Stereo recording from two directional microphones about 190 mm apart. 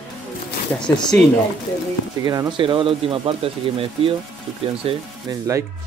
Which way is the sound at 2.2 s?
25° right (ahead or behind).